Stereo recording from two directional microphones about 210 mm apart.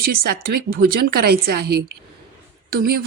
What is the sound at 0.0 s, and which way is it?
Speech, 45° right (ahead or behind).